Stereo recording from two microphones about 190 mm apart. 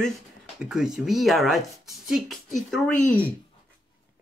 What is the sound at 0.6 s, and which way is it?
Speech, 5° right (ahead or behind).